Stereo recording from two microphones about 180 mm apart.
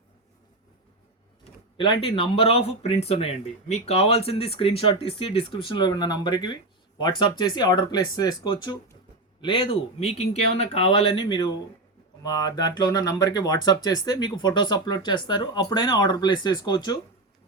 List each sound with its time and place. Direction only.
1.8 s speech: 30° left (ahead or behind)